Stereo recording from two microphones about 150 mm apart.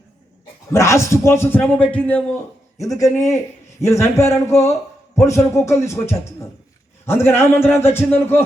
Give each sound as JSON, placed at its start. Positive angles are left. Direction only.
{"t": 0.7, "sound": "a man's voice", "side_deg": 20}
{"t": 2.8, "sound": "a man's voice", "side_deg": 20}